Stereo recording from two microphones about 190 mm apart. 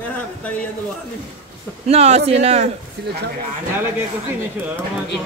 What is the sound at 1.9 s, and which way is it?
Speech, 35° right (ahead or behind).